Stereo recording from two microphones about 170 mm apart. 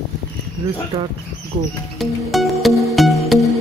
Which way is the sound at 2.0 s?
Centre (ahead or behind).